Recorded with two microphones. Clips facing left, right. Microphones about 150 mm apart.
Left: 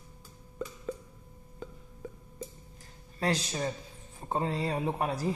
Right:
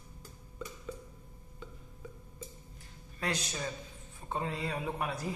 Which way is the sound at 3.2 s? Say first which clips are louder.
Left 6 dB; 35° left (ahead or behind).